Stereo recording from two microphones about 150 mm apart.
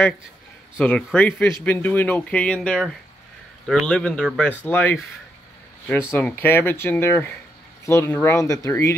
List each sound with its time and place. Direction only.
0.7 s speech: 10° left (ahead or behind)
6.1 s speech: 15° left (ahead or behind)